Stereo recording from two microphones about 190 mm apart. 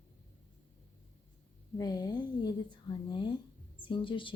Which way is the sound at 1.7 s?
20° left (ahead or behind).